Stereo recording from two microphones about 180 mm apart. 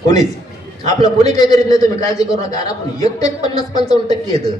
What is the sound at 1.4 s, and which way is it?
Speech, 20° left (ahead or behind).